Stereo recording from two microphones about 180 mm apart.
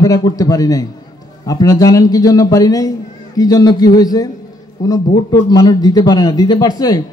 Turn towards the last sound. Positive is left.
turn(degrees=20)  # may be behind; listen again after turning